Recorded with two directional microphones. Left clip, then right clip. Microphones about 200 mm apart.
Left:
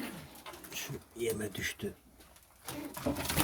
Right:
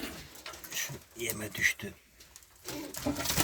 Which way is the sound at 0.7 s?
Centre (ahead or behind).